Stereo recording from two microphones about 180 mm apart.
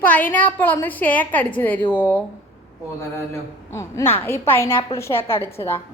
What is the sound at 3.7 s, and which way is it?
A woman's voice, 15° left (ahead or behind).